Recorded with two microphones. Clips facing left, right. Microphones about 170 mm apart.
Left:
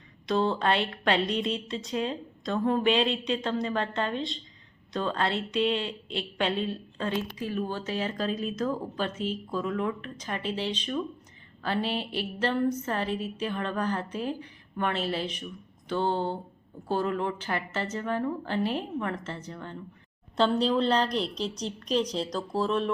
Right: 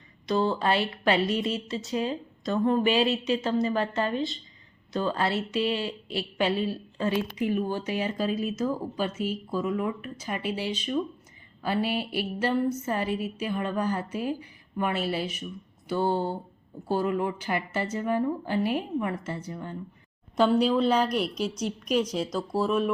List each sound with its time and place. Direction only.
0.3 s a woman's voice: centre (ahead or behind)